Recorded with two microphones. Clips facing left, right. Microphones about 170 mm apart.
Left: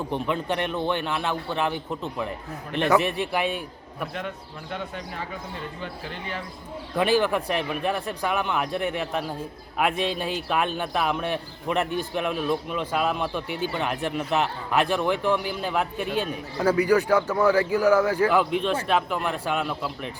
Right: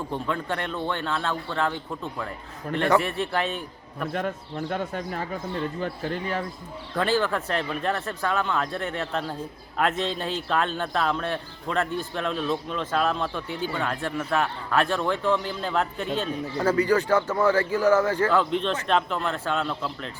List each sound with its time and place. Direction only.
0.1 s a man's voice: 20° left (ahead or behind)
4.1 s a man's voice: 45° right (ahead or behind)
6.9 s a man's voice: 15° left (ahead or behind)